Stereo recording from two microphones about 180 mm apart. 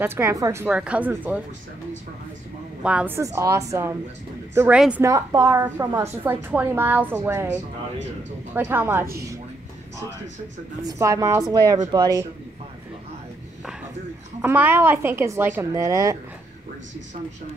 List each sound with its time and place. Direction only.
0.0 s a woman's voice: 15° right (ahead or behind)
2.8 s a woman's voice: 5° right (ahead or behind)
3.3 s a woman's voice: 15° right (ahead or behind)
4.6 s a woman's voice: 5° right (ahead or behind)
5.0 s a woman's voice: 15° right (ahead or behind)
8.5 s a woman's voice: 10° right (ahead or behind)
10.8 s a woman's voice: 20° right (ahead or behind)
14.4 s a woman's voice: 10° right (ahead or behind)